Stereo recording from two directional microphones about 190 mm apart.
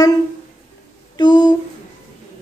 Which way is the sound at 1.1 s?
25° left (ahead or behind).